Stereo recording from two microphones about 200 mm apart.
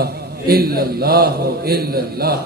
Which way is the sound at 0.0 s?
50° right (ahead or behind).